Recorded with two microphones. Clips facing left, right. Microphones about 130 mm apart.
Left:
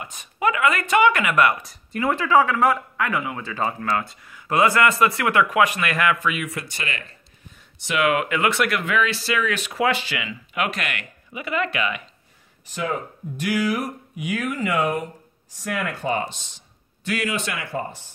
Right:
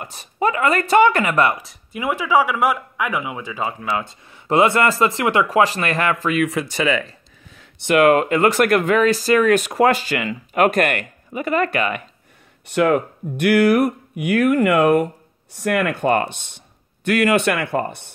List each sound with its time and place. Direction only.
0.0 s speech: 35° right (ahead or behind)
1.6 s a sound: centre (ahead or behind)
2.0 s a man's voice: 10° right (ahead or behind); by 6.1 s 35° right (ahead or behind)
6.4 s a sound: 90° right
7.9 s speech: 45° right (ahead or behind)
12.6 s speech: 65° right (ahead or behind)